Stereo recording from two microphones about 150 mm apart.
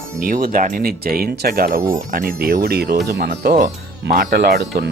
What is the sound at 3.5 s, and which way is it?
Speech, 60° right (ahead or behind).